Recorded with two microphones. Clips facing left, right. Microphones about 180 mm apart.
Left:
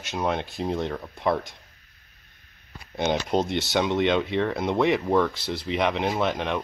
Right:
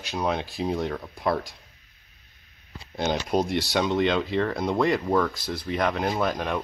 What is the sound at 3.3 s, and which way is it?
Speech, 20° left (ahead or behind).